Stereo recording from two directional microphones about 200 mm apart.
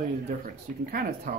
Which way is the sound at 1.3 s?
45° right (ahead or behind).